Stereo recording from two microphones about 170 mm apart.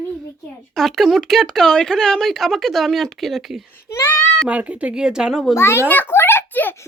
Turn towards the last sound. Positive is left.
turn(degrees=10)  # may be behind; listen again after turning